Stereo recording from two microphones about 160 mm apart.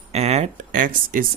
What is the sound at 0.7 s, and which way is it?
Speech, 60° right (ahead or behind).